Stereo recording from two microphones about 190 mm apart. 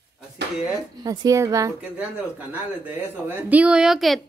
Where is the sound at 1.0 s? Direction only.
20° right (ahead or behind); by 4.2 s centre (ahead or behind).